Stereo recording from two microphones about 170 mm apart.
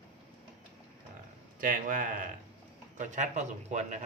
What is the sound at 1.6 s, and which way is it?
Speech, 55° right (ahead or behind).